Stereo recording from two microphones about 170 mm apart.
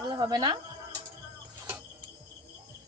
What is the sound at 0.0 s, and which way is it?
Speech, 25° right (ahead or behind).